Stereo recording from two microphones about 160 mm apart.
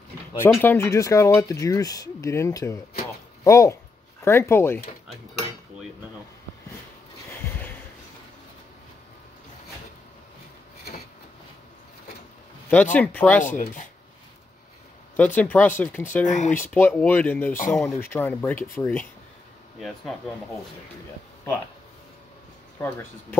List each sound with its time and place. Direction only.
0.4 s speech: 15° left (ahead or behind)
12.9 s speech: 10° left (ahead or behind)
13.4 s speech: 55° left (ahead or behind)
15.1 s speech: 10° left (ahead or behind)
16.3 s speech: 50° left (ahead or behind)
16.5 s speech: 10° left (ahead or behind)
22.8 s speech: 15° left (ahead or behind)